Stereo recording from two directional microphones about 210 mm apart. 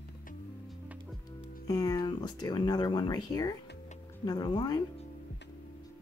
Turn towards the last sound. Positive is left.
turn(degrees=20)  # may be behind; listen again after turning